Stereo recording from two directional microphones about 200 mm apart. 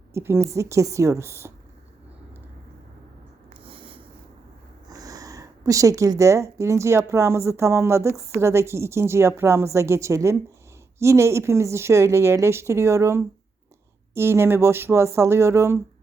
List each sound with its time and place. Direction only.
0.1 s speech: 10° right (ahead or behind)
3.6 s writing: 25° right (ahead or behind)
4.9 s speech: 20° right (ahead or behind)